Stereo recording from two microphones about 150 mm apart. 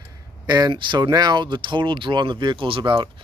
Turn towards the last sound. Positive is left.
turn(degrees=-30)  # may be behind; listen again after turning